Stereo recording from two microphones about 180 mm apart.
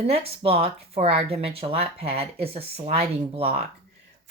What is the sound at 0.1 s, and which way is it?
Speech, 35° right (ahead or behind).